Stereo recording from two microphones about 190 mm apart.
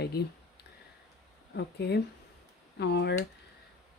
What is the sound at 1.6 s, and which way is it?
Speech, 60° left (ahead or behind).